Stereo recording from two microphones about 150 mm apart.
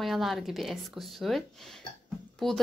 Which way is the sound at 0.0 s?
Centre (ahead or behind).